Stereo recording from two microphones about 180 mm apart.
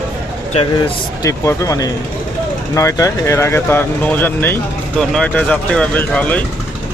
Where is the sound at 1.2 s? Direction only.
15° left (ahead or behind).